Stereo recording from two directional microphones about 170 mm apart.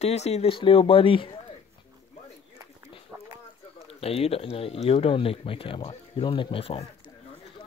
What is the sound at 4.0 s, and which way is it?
Speech, 35° left (ahead or behind).